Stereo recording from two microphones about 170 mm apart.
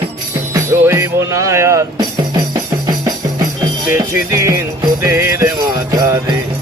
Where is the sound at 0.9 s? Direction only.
15° right (ahead or behind).